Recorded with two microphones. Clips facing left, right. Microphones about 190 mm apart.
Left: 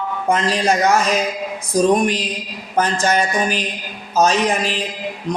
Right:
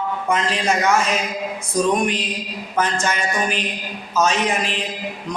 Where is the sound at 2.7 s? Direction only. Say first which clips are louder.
Left 4 dB; 35° left (ahead or behind).